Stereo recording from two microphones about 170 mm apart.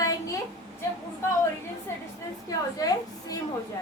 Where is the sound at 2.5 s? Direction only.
20° left (ahead or behind).